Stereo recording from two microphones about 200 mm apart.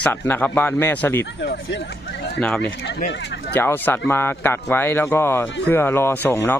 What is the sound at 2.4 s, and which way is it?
Speech, 5° left (ahead or behind).